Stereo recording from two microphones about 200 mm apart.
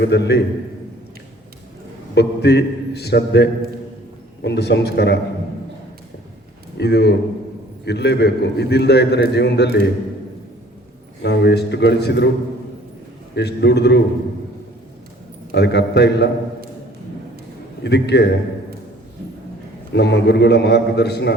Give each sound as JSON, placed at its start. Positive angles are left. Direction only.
{"t": 0.0, "sound": "a man's voice", "side_deg": 55}
{"t": 2.1, "sound": "a man's voice", "side_deg": 55}
{"t": 6.7, "sound": "a man's voice", "side_deg": 55}
{"t": 11.2, "sound": "a man's voice", "side_deg": 55}
{"t": 13.3, "sound": "a man's voice", "side_deg": 55}
{"t": 15.5, "sound": "a man's voice", "side_deg": 55}
{"t": 17.8, "sound": "a man's voice", "side_deg": 60}
{"t": 19.9, "sound": "a man's voice", "side_deg": 60}